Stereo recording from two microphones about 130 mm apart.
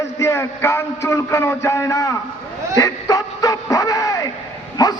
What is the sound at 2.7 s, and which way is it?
Bow-wow, 25° left (ahead or behind).